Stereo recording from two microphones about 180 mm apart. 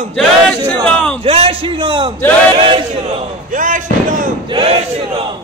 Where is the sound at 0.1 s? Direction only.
5° left (ahead or behind).